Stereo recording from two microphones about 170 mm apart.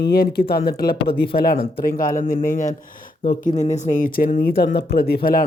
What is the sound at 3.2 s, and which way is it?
Speech, 40° left (ahead or behind).